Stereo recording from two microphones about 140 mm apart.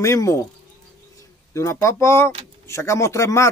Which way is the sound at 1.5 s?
20° left (ahead or behind).